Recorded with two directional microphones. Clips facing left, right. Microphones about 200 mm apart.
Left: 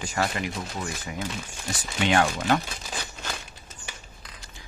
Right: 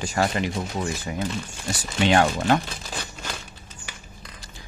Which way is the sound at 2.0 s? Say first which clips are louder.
Right 3 dB; 35° right (ahead or behind).